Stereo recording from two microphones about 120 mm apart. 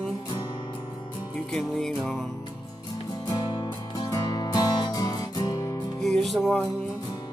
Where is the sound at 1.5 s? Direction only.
5° left (ahead or behind).